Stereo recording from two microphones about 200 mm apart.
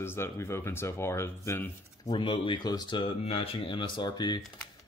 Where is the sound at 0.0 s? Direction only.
10° left (ahead or behind).